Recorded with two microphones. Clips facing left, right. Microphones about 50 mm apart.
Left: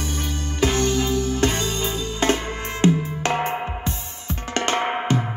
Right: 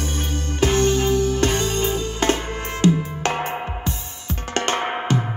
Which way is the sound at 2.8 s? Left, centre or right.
Left.